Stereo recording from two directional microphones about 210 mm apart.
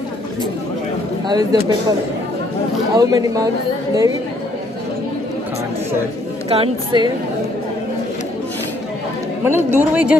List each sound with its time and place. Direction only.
1.3 s speech: 20° right (ahead or behind)
6.5 s a woman's voice: 25° right (ahead or behind)
9.4 s speech: 10° right (ahead or behind)